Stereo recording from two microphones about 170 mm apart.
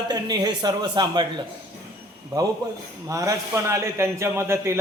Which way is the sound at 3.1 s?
20° right (ahead or behind).